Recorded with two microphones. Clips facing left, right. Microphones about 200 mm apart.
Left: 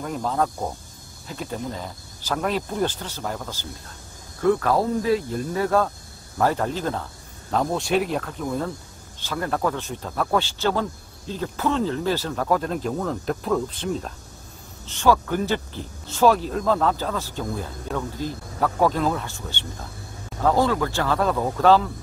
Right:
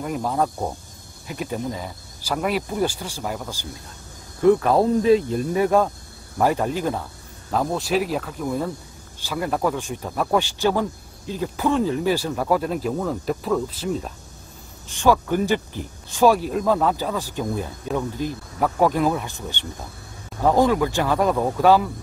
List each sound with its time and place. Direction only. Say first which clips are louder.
0.0 s speech: right 1 dB; 10° right (ahead or behind)
7.6 s speech: even; centre (ahead or behind)